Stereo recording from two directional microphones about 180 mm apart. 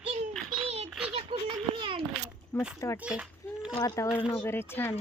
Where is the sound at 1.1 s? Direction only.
30° right (ahead or behind).